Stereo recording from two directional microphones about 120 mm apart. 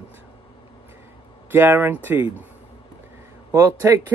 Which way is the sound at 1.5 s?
15° right (ahead or behind).